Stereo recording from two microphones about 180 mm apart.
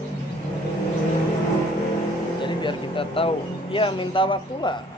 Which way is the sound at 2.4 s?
30° left (ahead or behind).